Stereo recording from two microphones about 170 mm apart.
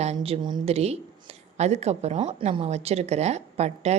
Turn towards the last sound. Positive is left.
turn(degrees=-40)  # may be behind; listen again after turning